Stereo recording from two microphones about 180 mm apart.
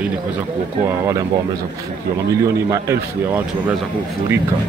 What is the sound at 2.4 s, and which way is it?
A man's voice, 15° right (ahead or behind).